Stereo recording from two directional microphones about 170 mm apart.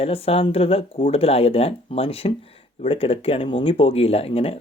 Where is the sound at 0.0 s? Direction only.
35° left (ahead or behind).